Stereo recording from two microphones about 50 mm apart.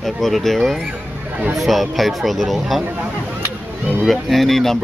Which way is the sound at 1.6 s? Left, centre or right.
Centre.